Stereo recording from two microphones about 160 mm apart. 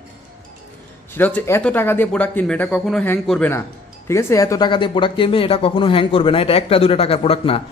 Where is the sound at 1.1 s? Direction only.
10° left (ahead or behind).